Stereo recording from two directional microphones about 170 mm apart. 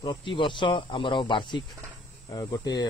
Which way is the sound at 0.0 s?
30° left (ahead or behind).